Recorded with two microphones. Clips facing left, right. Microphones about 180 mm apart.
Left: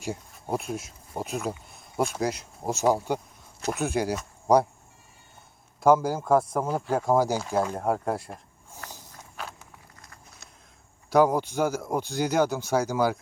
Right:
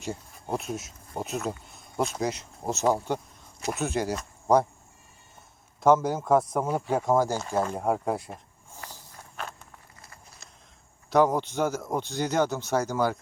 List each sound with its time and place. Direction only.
0.0 s speech: 5° left (ahead or behind)
5.8 s speech: 5° left (ahead or behind)
11.1 s speech: 5° left (ahead or behind)